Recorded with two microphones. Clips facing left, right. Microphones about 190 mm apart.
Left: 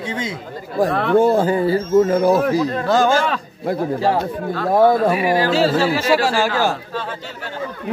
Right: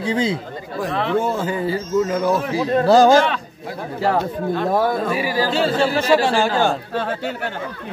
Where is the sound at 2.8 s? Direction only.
35° right (ahead or behind).